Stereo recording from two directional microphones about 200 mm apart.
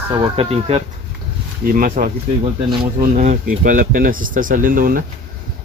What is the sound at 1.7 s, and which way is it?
Speech, 45° right (ahead or behind).